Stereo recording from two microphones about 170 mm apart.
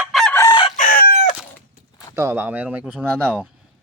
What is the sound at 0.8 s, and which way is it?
Chicken, 55° left (ahead or behind).